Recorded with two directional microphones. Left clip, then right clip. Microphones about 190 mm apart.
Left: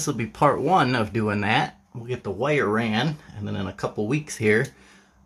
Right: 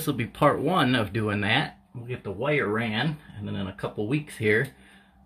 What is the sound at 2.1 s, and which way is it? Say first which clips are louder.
Speech: left 3 dB; 25° left (ahead or behind).